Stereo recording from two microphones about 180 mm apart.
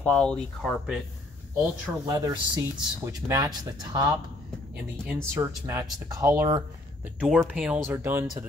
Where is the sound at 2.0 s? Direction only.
20° right (ahead or behind).